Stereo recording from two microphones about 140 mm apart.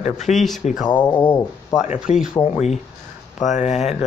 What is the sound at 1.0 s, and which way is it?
Speech, 15° left (ahead or behind).